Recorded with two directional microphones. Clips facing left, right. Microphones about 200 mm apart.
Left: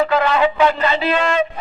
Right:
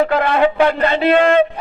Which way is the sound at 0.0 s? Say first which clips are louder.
Right 2 dB; 55° right (ahead or behind).